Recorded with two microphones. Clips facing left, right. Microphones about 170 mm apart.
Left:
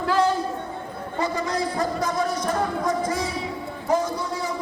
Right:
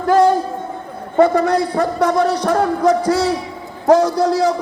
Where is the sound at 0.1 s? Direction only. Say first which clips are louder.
Right 9 dB; 45° right (ahead or behind).